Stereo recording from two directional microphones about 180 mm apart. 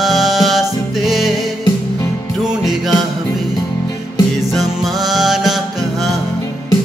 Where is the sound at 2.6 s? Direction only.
Centre (ahead or behind).